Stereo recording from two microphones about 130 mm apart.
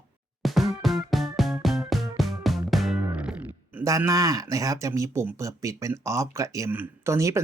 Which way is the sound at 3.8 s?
25° right (ahead or behind).